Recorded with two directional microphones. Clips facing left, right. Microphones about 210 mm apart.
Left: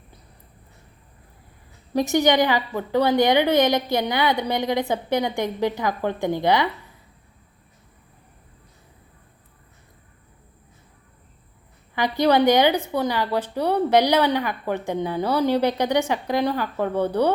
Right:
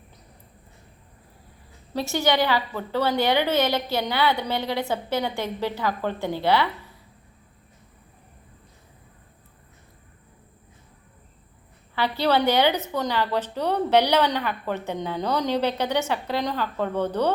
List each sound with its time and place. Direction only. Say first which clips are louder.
1.9 s a woman's voice: left 5 dB; 15° left (ahead or behind)
11.9 s a woman's voice: left 4 dB; 15° left (ahead or behind)